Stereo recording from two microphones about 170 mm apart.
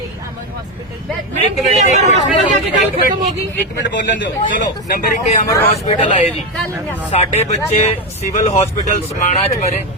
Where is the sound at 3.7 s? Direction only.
90° left.